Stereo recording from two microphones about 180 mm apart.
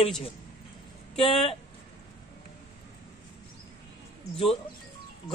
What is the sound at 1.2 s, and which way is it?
Speech, 30° left (ahead or behind).